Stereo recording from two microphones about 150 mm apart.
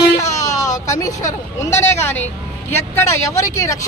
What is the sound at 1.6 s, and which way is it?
A man's voice, 15° left (ahead or behind).